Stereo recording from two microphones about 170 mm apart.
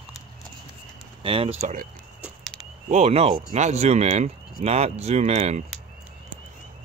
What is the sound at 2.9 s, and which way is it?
Speech, 40° right (ahead or behind).